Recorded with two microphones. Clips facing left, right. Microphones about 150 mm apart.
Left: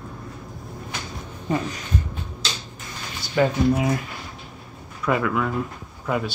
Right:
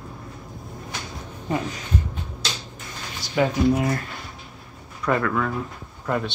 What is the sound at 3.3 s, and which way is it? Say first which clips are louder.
Speech: even; 5° right (ahead or behind).